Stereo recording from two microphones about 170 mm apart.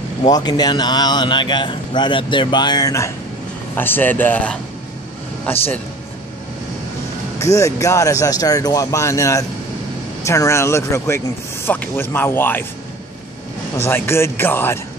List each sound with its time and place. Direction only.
0.2 s speech: 25° left (ahead or behind)
7.5 s speech: 20° left (ahead or behind)
13.7 s speech: 15° left (ahead or behind)